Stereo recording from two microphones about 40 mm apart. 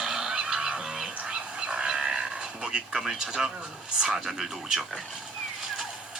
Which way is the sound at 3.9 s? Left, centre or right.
Centre.